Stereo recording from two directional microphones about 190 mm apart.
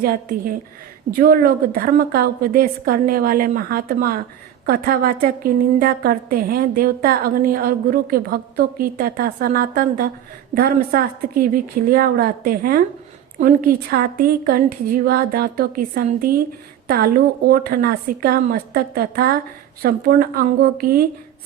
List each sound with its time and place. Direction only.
0.0 s a woman's voice: 50° right (ahead or behind)